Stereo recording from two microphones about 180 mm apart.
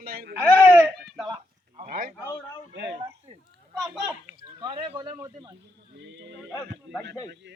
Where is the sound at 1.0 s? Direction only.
Centre (ahead or behind).